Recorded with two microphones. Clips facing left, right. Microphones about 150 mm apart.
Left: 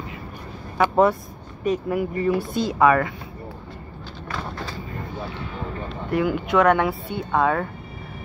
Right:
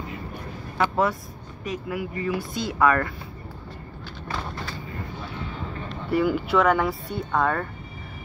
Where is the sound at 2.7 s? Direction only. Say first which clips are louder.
Left 3 dB; 15° left (ahead or behind).